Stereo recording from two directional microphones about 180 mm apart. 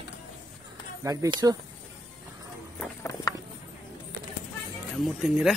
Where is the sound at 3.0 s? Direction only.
15° left (ahead or behind).